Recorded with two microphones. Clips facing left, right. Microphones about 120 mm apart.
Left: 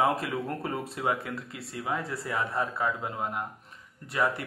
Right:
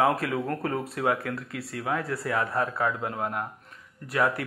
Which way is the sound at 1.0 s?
60° right (ahead or behind).